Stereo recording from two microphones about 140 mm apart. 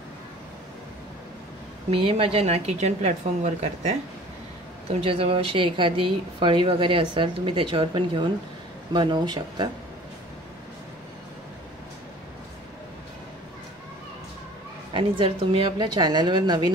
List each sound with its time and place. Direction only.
1.9 s a woman's voice: 40° right (ahead or behind)
5.0 s speech: 40° right (ahead or behind)
15.0 s speech: 40° right (ahead or behind)